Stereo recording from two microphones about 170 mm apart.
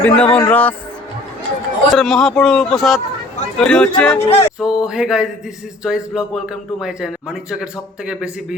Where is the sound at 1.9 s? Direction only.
Centre (ahead or behind).